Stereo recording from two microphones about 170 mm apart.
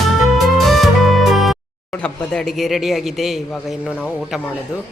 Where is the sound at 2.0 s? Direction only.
Centre (ahead or behind).